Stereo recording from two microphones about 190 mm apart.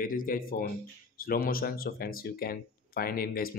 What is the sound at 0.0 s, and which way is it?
Speech, 45° left (ahead or behind).